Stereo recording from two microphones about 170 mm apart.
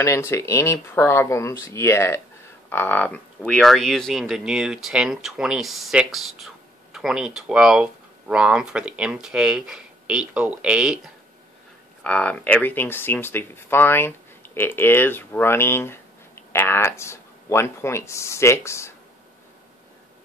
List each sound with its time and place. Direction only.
0.0 s speech: 15° left (ahead or behind); by 11.0 s 5° right (ahead or behind)
12.0 s speech: 5° left (ahead or behind)